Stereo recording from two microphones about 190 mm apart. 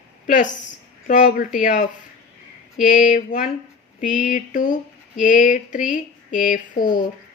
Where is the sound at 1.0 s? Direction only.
45° left (ahead or behind).